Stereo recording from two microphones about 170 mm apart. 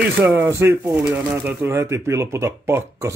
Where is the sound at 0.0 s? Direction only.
10° right (ahead or behind).